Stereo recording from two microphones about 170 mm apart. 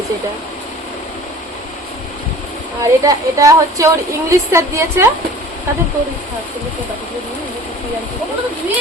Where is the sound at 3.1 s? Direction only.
20° right (ahead or behind).